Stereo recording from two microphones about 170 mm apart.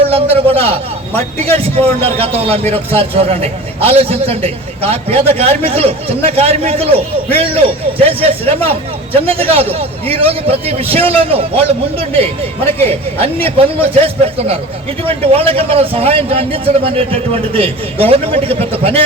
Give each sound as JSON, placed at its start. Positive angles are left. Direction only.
{"t": 0.1, "sound": "a man's voice", "side_deg": -35}